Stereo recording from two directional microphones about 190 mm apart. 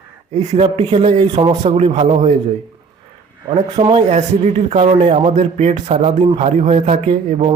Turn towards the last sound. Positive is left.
turn(degrees=-35)  # may be behind; listen again after turning